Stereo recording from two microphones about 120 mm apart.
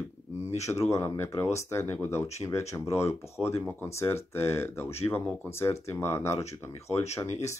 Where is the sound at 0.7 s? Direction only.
25° left (ahead or behind).